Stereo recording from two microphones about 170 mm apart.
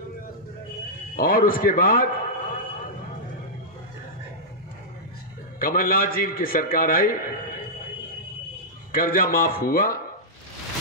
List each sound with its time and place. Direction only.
1.1 s a man's voice: 55° left (ahead or behind)
5.6 s a man's voice: 55° left (ahead or behind)
8.9 s a man's voice: 60° left (ahead or behind)